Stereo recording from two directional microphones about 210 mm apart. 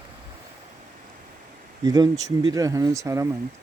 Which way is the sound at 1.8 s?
20° right (ahead or behind).